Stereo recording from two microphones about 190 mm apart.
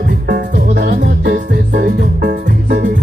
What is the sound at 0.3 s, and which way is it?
Music, 50° right (ahead or behind).